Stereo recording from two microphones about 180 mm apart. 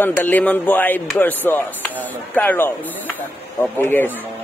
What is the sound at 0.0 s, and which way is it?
Speech, 10° left (ahead or behind).